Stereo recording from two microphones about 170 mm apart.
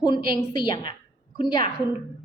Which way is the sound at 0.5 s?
25° left (ahead or behind).